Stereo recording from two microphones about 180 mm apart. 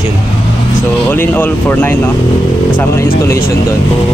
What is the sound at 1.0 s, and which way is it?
Speech, 10° left (ahead or behind).